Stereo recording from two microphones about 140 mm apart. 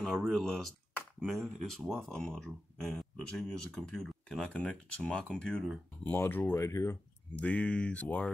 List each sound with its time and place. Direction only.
0.0 s speech: 5° left (ahead or behind); by 7.0 s 20° left (ahead or behind)
7.3 s speech: 10° left (ahead or behind)